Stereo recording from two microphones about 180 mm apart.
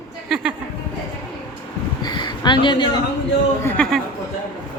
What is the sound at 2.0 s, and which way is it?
Speech, 25° left (ahead or behind).